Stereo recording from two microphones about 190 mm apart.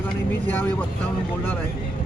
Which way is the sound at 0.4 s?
10° left (ahead or behind).